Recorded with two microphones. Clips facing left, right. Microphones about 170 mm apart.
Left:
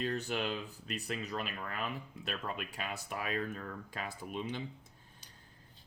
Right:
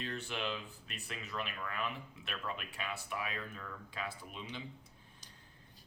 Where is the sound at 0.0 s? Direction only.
40° left (ahead or behind).